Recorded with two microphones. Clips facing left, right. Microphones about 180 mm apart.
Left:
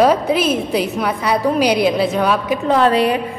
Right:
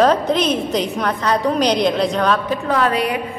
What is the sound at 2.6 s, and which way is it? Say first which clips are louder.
Speech: left 5 dB; 25° left (ahead or behind).